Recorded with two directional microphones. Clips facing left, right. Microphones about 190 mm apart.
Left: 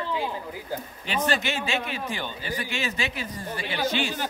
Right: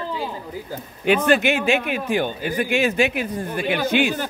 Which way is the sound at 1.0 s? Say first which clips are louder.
Right 10 dB; 55° right (ahead or behind).